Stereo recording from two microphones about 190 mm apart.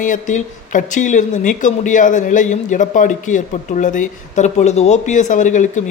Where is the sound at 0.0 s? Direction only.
40° left (ahead or behind).